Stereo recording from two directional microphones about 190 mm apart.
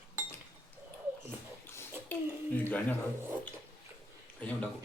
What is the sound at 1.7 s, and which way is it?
Bathtub, 10° left (ahead or behind).